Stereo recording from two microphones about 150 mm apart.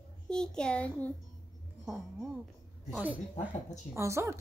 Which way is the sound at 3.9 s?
20° right (ahead or behind).